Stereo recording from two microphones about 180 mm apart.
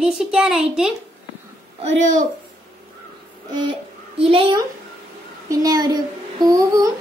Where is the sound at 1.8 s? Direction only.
35° right (ahead or behind).